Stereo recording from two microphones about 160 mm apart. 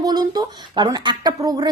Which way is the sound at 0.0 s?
25° right (ahead or behind).